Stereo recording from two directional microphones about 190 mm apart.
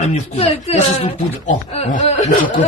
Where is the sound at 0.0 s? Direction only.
35° left (ahead or behind).